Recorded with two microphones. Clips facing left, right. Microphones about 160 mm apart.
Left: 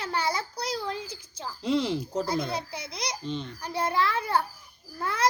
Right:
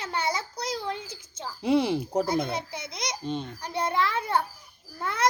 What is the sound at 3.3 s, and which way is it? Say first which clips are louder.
Speech: right 3 dB; 50° right (ahead or behind).